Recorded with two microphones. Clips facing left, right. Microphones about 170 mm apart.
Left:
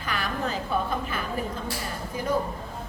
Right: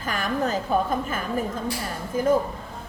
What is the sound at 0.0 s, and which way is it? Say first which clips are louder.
A woman's voice: right 4 dB; 45° right (ahead or behind).